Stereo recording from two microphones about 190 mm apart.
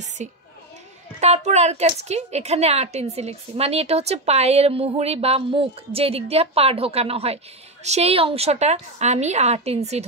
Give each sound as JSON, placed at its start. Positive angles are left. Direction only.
{"t": 0.2, "sound": "speech", "side_deg": -40}